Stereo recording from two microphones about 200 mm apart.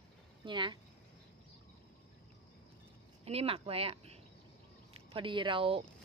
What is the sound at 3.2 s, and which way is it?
A woman's voice, 30° right (ahead or behind).